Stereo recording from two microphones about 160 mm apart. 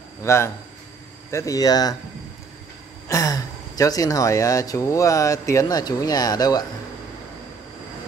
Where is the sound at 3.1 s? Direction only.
20° left (ahead or behind).